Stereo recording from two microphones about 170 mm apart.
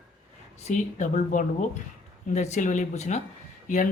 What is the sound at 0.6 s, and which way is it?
Speech, 45° left (ahead or behind).